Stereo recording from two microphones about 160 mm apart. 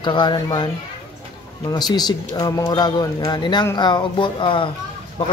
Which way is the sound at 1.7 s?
25° left (ahead or behind).